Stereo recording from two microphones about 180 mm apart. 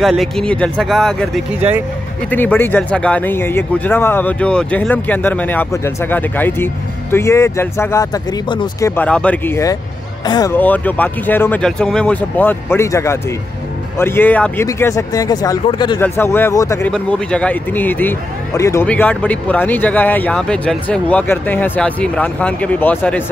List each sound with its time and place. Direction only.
0.0 s speech: centre (ahead or behind); by 10.5 s 25° left (ahead or behind)
10.5 s speech: 10° left (ahead or behind); by 16.0 s 25° left (ahead or behind)
16.0 s speech: 10° left (ahead or behind)
16.9 s speech: 5° left (ahead or behind)